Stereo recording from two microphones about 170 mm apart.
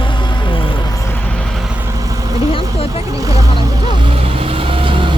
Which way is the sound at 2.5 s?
35° left (ahead or behind).